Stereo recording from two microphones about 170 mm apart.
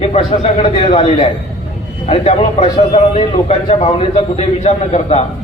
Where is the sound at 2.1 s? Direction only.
35° left (ahead or behind).